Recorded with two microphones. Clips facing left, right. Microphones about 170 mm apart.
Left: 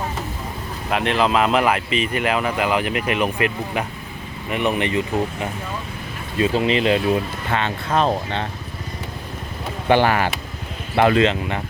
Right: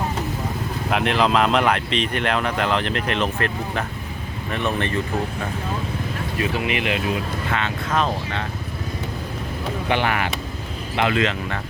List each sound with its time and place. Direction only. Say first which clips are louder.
0.9 s speech: left 1 dB; centre (ahead or behind); by 8.4 s 30° left (ahead or behind)
9.9 s speech: left 6 dB; 35° left (ahead or behind)
11.2 s speech: left 4 dB; 20° left (ahead or behind)